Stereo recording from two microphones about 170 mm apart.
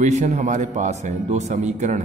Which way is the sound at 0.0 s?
45° right (ahead or behind).